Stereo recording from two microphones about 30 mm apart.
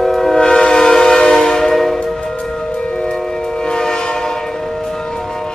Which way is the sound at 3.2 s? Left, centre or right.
Left.